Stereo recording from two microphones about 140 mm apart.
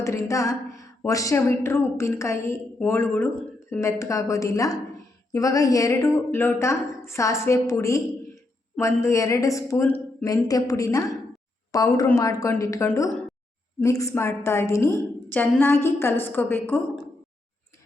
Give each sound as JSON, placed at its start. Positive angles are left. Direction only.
{"t": 0.0, "sound": "a woman's voice", "side_deg": 20}
{"t": 9.8, "sound": "speech", "side_deg": 10}
{"t": 10.2, "sound": "a woman's voice", "side_deg": 25}